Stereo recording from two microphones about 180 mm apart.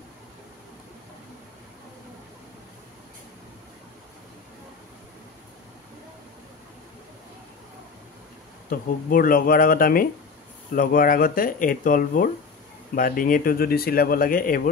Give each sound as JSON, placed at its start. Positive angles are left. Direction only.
{"t": 8.6, "sound": "speech", "side_deg": 50}